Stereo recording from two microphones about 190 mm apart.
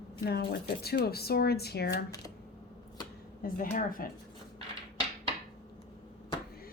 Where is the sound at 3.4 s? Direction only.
45° left (ahead or behind).